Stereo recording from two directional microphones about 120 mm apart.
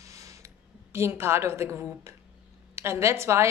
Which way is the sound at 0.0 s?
25° right (ahead or behind).